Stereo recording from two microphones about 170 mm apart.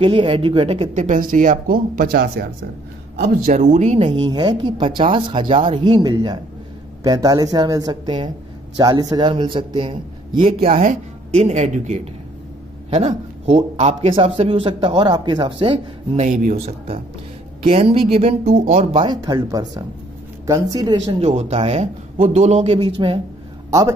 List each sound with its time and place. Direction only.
0.0 s speech: 30° right (ahead or behind); by 2.4 s 60° right (ahead or behind)
3.5 s a man's voice: 45° right (ahead or behind)
10.7 s speech: 50° right (ahead or behind); by 16.3 s 30° right (ahead or behind)
16.3 s speech: 50° right (ahead or behind)
16.6 s speech: 35° right (ahead or behind)